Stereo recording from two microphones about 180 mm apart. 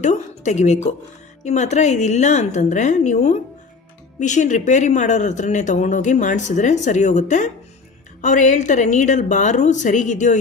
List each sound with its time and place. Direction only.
0.0 s a woman's voice: 40° left (ahead or behind)